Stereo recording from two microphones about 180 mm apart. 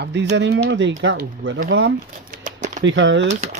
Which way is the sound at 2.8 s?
90° right.